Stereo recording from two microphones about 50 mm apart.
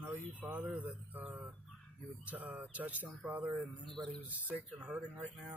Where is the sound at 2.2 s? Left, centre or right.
Right.